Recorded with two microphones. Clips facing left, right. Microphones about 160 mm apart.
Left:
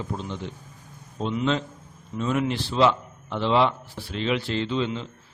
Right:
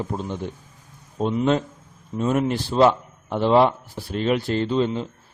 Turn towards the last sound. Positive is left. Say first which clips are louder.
# right 5 dB
turn(degrees=-45)  # may be behind; listen again after turning